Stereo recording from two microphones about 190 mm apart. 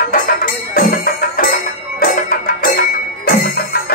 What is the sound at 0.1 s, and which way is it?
Music, 50° left (ahead or behind).